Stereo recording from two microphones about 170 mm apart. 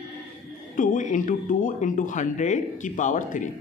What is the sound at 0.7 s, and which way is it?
A man's voice, 50° left (ahead or behind).